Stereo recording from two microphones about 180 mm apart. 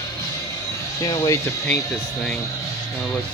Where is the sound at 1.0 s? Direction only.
20° left (ahead or behind).